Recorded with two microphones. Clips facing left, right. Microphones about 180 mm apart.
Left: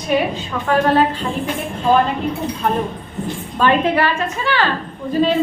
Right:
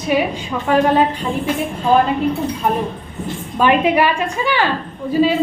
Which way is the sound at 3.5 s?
15° right (ahead or behind).